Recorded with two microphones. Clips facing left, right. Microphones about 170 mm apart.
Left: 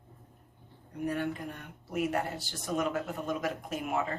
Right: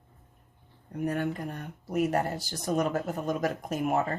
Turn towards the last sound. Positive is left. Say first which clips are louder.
# right 5 dB
turn(degrees=-45)  # may be behind; listen again after turning